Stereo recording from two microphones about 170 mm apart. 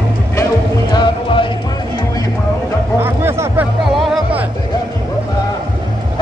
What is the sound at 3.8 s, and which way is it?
Music, centre (ahead or behind).